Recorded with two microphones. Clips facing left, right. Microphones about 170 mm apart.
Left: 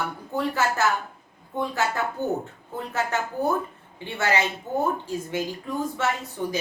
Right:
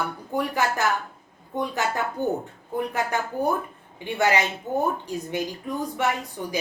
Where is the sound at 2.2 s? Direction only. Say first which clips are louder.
Right 1 dB; 15° right (ahead or behind).